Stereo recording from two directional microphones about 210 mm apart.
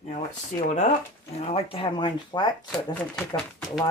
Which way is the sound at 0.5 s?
35° left (ahead or behind).